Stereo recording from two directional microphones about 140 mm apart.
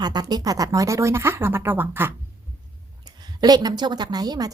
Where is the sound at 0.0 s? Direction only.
30° right (ahead or behind).